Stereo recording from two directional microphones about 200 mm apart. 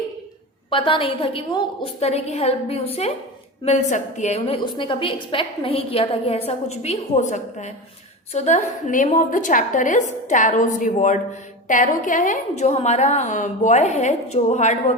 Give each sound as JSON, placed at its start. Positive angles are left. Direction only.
{"t": 0.7, "sound": "a woman's voice", "side_deg": 25}